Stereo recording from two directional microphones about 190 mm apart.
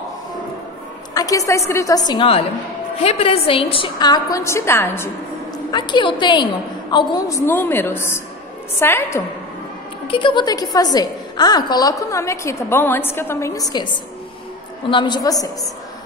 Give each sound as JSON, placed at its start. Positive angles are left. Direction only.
{"t": 1.1, "sound": "a woman's voice", "side_deg": 20}
{"t": 2.0, "sound": "a woman's voice", "side_deg": 25}
{"t": 5.7, "sound": "a woman's voice", "side_deg": 25}
{"t": 10.0, "sound": "a woman's voice", "side_deg": 25}
{"t": 14.9, "sound": "a woman's voice", "side_deg": 25}